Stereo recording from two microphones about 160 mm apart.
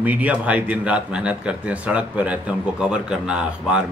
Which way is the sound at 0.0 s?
10° right (ahead or behind).